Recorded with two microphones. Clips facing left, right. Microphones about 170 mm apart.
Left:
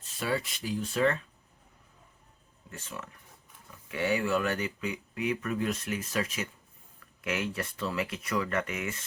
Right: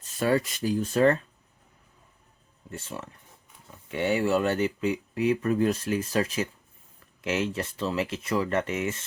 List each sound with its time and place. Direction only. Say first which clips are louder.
0.2 s speech: right 7 dB; 45° right (ahead or behind)
2.6 s speech: right 5 dB; 30° right (ahead or behind)